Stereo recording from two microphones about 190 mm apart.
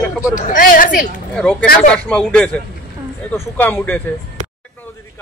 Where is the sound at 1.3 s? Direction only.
5° left (ahead or behind).